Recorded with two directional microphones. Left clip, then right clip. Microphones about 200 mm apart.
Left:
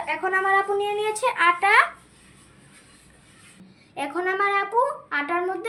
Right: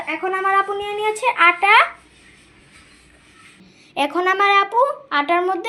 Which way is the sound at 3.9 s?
30° right (ahead or behind).